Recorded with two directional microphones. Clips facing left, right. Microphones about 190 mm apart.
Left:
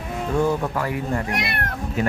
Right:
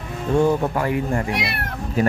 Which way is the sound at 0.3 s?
25° right (ahead or behind).